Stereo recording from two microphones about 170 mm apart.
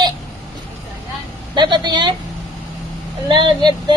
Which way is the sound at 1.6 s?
25° right (ahead or behind).